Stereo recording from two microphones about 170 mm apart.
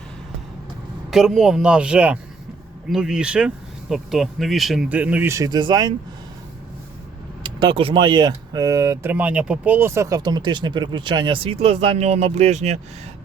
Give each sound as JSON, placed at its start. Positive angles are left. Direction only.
{"t": 1.1, "sound": "speech", "side_deg": 0}
{"t": 7.4, "sound": "speech", "side_deg": -30}